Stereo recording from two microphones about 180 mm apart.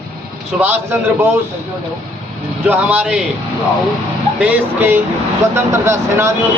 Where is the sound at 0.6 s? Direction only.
10° right (ahead or behind).